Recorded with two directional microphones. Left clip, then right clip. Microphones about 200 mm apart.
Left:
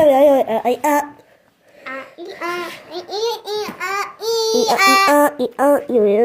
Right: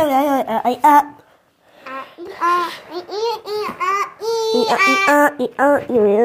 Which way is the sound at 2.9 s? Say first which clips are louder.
Left 1 dB; centre (ahead or behind).